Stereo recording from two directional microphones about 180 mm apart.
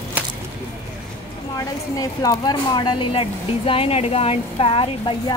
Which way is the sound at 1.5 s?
20° left (ahead or behind).